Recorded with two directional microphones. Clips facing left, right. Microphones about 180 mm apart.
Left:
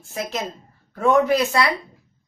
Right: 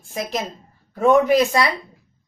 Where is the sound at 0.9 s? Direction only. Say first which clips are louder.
Right 2 dB; 15° right (ahead or behind).